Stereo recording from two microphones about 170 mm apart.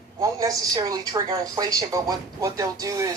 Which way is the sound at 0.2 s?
20° right (ahead or behind).